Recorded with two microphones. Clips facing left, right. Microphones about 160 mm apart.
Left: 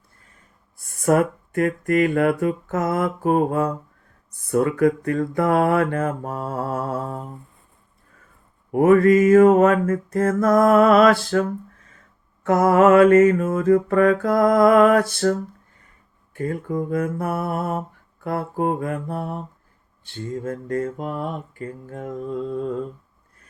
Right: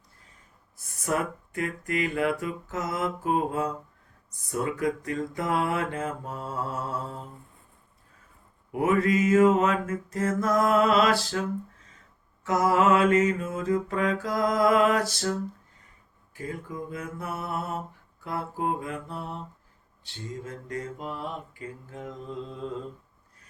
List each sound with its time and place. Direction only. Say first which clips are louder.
1.0 s music: left 10 dB; 55° left (ahead or behind)
4.3 s mantra: left 9 dB; 60° left (ahead or behind)
8.7 s music: left 10 dB; 50° left (ahead or behind)
12.4 s mantra: left 7 dB; 55° left (ahead or behind)
20.1 s music: left 9 dB; 50° left (ahead or behind)